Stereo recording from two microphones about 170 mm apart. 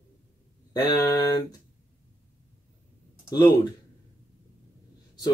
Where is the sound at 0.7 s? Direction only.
25° left (ahead or behind).